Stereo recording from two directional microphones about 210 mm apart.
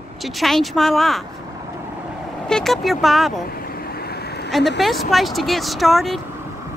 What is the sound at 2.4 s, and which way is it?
Speech, centre (ahead or behind).